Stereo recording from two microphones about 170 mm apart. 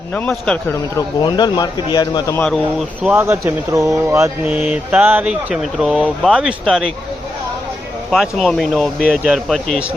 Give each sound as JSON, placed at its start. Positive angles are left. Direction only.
{"t": 0.1, "sound": "a man's voice", "side_deg": 5}
{"t": 0.7, "sound": "speech", "side_deg": 20}
{"t": 2.3, "sound": "speech", "side_deg": 5}
{"t": 3.2, "sound": "speech", "side_deg": -15}
{"t": 8.1, "sound": "speech", "side_deg": 0}